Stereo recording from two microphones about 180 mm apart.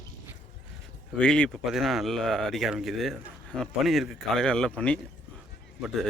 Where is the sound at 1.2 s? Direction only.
5° left (ahead or behind).